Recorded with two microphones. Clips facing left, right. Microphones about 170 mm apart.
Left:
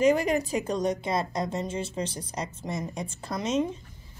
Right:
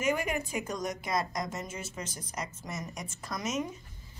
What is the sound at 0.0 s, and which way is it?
A woman's voice, 35° left (ahead or behind).